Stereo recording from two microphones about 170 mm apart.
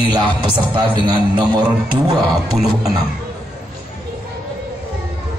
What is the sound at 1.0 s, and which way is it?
Speech, 30° right (ahead or behind).